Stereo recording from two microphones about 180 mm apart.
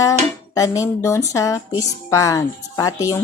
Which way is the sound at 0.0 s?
20° left (ahead or behind).